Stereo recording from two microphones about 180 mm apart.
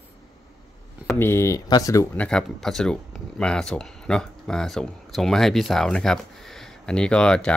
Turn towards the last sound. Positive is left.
turn(degrees=5)  # may be behind; listen again after turning